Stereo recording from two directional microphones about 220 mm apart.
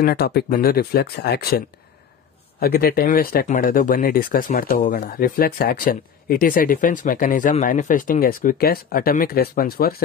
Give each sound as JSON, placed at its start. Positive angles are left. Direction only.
{"t": 0.0, "sound": "speech", "side_deg": 45}
{"t": 2.6, "sound": "speech", "side_deg": 45}